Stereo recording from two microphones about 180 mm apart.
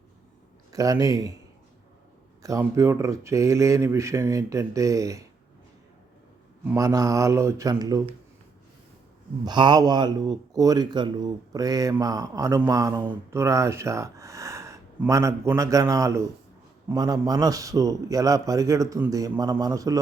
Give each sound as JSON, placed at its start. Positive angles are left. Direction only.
{"t": 0.7, "sound": "speech", "side_deg": -20}
{"t": 2.4, "sound": "speech", "side_deg": -15}
{"t": 6.7, "sound": "speech", "side_deg": -20}
{"t": 9.4, "sound": "speech", "side_deg": -25}